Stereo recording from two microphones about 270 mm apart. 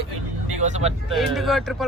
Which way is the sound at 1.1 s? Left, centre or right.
Centre.